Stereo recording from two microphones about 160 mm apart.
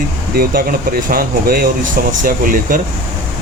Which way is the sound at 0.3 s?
65° right (ahead or behind).